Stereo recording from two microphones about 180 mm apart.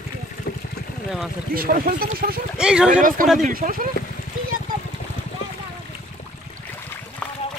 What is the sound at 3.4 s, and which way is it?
Speech, 50° right (ahead or behind).